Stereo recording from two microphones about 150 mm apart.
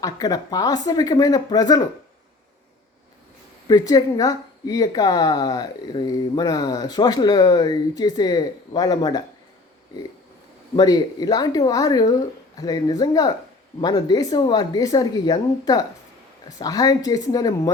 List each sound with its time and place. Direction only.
0.0 s a woman's voice: 25° left (ahead or behind)
3.7 s a woman's voice: 25° left (ahead or behind)
10.8 s a woman's voice: 25° left (ahead or behind)